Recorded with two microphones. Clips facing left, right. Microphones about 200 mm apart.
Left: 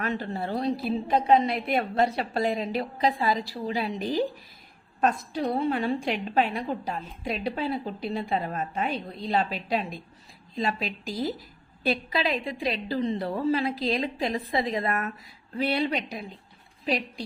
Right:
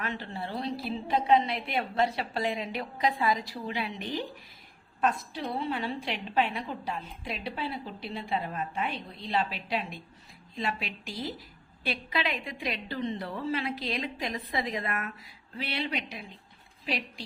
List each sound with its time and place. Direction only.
0.0 s a woman's voice: 45° left (ahead or behind)